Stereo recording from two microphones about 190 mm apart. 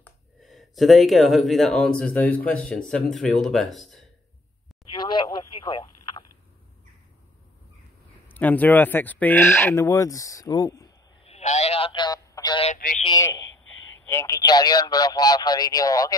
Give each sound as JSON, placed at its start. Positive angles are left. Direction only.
{"t": 0.0, "sound": "speech", "side_deg": 0}
{"t": 4.9, "sound": "telephone", "side_deg": 25}
{"t": 8.3, "sound": "speech", "side_deg": 10}
{"t": 11.2, "sound": "a sound", "side_deg": 35}
{"t": 14.0, "sound": "speech", "side_deg": 15}